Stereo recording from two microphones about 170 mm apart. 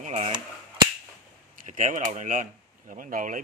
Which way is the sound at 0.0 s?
40° right (ahead or behind).